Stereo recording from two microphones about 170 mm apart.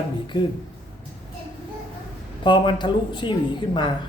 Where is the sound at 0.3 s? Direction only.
25° left (ahead or behind).